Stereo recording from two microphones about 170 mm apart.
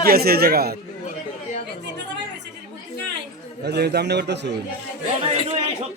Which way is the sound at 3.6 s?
75° right (ahead or behind).